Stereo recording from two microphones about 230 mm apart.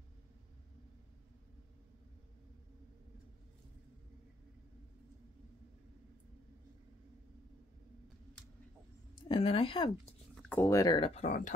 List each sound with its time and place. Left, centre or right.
9.3 s speech: left
10.3 s speech: centre
11.1 s speech: left